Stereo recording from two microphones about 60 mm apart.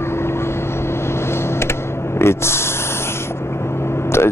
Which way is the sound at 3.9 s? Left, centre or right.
Left.